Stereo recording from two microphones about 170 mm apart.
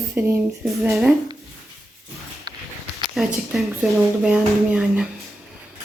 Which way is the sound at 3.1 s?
Centre (ahead or behind).